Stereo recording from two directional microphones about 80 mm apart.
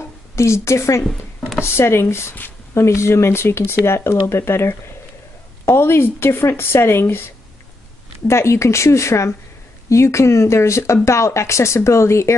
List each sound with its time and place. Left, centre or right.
0.4 s speech: left
8.3 s speech: left